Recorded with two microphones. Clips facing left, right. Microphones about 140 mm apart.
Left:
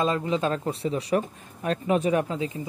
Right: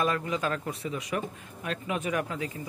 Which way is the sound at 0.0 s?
25° left (ahead or behind).